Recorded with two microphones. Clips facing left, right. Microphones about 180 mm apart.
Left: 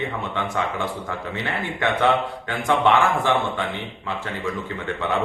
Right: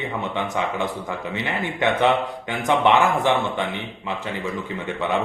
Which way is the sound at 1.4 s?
20° right (ahead or behind).